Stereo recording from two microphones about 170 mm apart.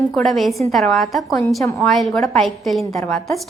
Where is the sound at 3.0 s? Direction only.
10° left (ahead or behind).